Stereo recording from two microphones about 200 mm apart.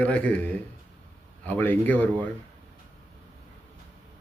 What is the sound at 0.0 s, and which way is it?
A man's voice, 5° left (ahead or behind).